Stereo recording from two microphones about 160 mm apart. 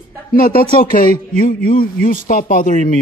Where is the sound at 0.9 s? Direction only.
60° left (ahead or behind).